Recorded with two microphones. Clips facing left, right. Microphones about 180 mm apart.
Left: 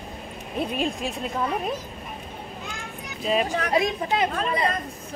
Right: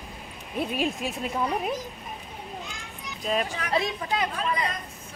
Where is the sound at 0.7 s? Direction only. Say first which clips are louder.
Right 1 dB; 5° right (ahead or behind).